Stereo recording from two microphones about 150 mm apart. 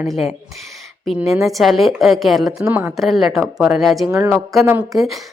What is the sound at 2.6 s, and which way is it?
Speech, 20° right (ahead or behind).